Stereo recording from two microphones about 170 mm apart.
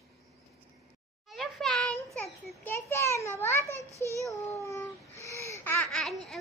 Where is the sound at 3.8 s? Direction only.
20° right (ahead or behind).